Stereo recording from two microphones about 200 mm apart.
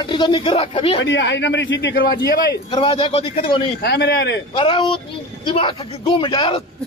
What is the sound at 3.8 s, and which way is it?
Speech, 55° left (ahead or behind).